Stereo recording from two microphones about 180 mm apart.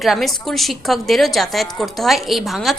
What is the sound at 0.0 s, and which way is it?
A woman's voice, centre (ahead or behind).